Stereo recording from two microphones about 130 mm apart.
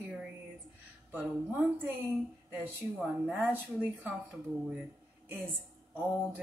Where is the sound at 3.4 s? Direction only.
15° right (ahead or behind).